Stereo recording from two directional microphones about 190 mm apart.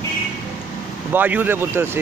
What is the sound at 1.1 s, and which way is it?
Speech, 10° right (ahead or behind).